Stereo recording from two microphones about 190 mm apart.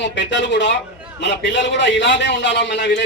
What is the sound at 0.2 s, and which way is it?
A man's voice, 70° left (ahead or behind).